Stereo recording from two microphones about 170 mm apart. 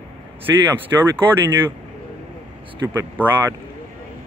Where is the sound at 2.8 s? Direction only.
15° right (ahead or behind).